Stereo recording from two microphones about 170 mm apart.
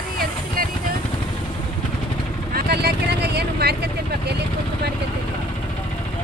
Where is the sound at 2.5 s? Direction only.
70° right (ahead or behind).